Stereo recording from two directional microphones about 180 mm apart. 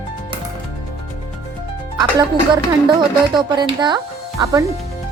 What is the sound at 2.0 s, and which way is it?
A woman's voice, 25° right (ahead or behind).